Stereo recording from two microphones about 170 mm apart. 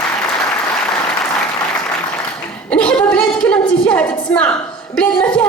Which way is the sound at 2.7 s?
5° left (ahead or behind).